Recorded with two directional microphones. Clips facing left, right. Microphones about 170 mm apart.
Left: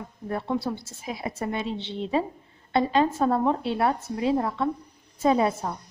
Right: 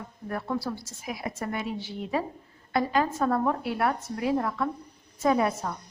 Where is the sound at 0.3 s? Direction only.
25° left (ahead or behind).